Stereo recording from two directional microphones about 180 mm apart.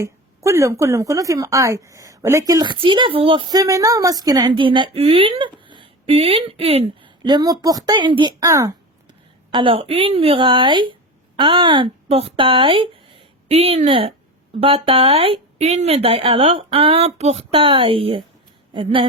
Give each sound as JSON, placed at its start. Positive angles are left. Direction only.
{"t": 0.0, "sound": "a woman's voice", "side_deg": -15}
{"t": 9.5, "sound": "a woman's voice", "side_deg": -30}